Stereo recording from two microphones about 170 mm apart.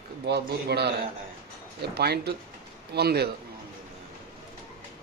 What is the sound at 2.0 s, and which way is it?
A man's voice, 70° right (ahead or behind).